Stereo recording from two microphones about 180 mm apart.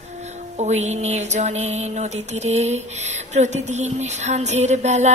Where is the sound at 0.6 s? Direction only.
40° right (ahead or behind).